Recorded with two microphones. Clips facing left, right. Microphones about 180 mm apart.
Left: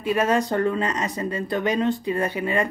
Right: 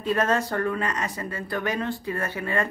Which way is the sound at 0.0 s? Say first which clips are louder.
Left 3 dB; 10° left (ahead or behind).